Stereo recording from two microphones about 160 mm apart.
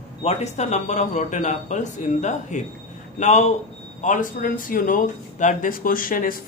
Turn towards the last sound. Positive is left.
turn(degrees=60)  # may be behind; listen again after turning